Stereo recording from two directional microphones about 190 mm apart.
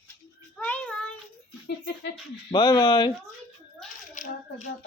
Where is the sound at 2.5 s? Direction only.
25° left (ahead or behind).